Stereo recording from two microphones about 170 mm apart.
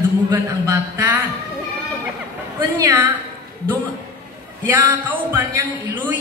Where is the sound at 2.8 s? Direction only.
20° right (ahead or behind).